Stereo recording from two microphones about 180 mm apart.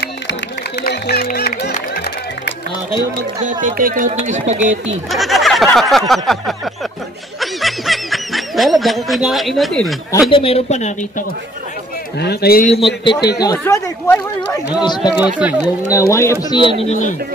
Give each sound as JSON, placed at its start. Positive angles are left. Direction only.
{"t": 0.8, "sound": "music", "side_deg": 60}
{"t": 3.6, "sound": "speech", "side_deg": -50}
{"t": 5.1, "sound": "a sound", "side_deg": 0}
{"t": 7.3, "sound": "speech", "side_deg": 0}
{"t": 10.3, "sound": "speech", "side_deg": 30}
{"t": 12.2, "sound": "a man's voice", "side_deg": 65}
{"t": 12.8, "sound": "a man's voice", "side_deg": 25}
{"t": 15.1, "sound": "speech", "side_deg": -5}
{"t": 16.1, "sound": "speech", "side_deg": 15}